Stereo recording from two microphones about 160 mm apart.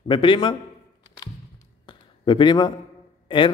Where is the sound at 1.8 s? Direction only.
30° left (ahead or behind).